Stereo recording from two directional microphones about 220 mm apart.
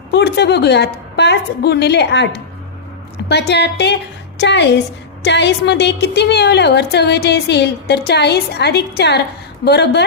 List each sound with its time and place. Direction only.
0.1 s a woman's voice: 50° left (ahead or behind)